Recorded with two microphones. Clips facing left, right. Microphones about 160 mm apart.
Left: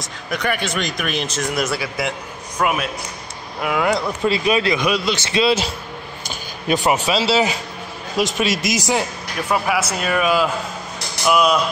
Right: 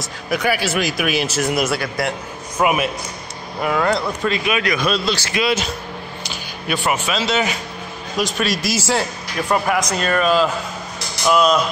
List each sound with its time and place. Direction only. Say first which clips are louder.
0.0 s speech: right 3 dB; 5° right (ahead or behind)
3.6 s a man's voice: right 1 dB; 10° left (ahead or behind)
4.3 s a man's voice: left 4 dB; 30° left (ahead or behind)
4.8 s a man's voice: even; 15° left (ahead or behind); by 5.7 s 30° left (ahead or behind)
7.1 s a man's voice: left 2 dB; 30° left (ahead or behind); by 11.5 s 10° left (ahead or behind)